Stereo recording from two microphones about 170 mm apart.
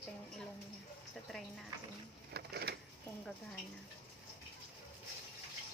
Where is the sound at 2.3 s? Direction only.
70° right (ahead or behind).